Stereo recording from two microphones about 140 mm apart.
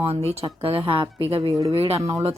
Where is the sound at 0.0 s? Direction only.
45° right (ahead or behind).